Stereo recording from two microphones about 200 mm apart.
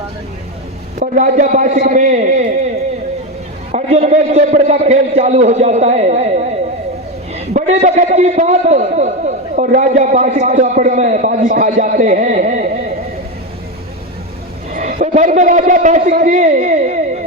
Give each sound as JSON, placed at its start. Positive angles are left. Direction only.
{"t": 0.9, "sound": "a man's voice", "side_deg": -40}
{"t": 3.7, "sound": "a man's voice", "side_deg": -35}
{"t": 14.7, "sound": "a sound", "side_deg": -45}
{"t": 15.1, "sound": "a man's voice", "side_deg": -40}